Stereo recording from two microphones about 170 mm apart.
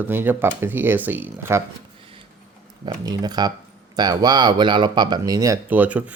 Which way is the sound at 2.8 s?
25° right (ahead or behind).